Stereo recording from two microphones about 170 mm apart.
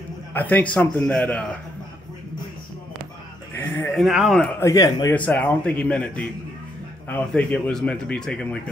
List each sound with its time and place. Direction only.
0.3 s a man's voice: 10° left (ahead or behind)
3.5 s a sound: 10° left (ahead or behind)
3.9 s speech: centre (ahead or behind)
4.6 s a man's voice: 20° left (ahead or behind)
5.1 s a man's voice: 10° left (ahead or behind)